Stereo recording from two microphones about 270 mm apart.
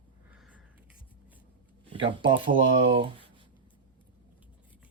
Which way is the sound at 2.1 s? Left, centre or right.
Centre.